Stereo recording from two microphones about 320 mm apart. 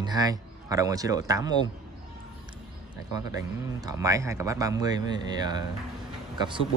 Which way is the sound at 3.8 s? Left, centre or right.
Centre.